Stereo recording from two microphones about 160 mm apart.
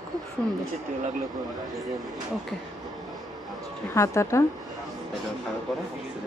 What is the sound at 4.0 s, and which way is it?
Speech, 20° left (ahead or behind).